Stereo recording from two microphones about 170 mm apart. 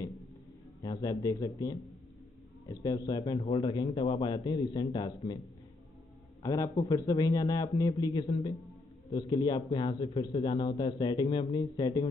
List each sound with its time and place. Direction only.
0.8 s a man's voice: 20° left (ahead or behind)
6.4 s a man's voice: 20° left (ahead or behind)